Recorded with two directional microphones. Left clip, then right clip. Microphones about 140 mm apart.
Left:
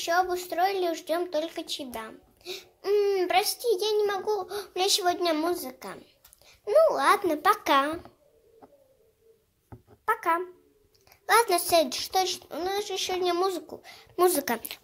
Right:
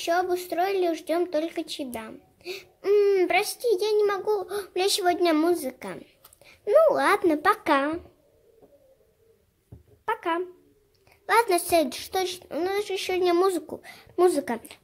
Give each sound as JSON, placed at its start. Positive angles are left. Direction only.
{"t": 0.0, "sound": "a child's voice", "side_deg": -40}
{"t": 10.0, "sound": "a child's voice", "side_deg": -30}
{"t": 14.2, "sound": "speech", "side_deg": -25}